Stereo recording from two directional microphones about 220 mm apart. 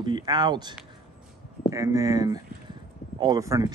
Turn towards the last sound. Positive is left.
turn(degrees=-15)  # may be behind; listen again after turning